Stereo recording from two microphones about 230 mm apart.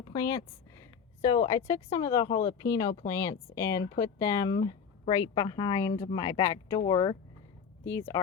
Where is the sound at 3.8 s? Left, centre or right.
Left.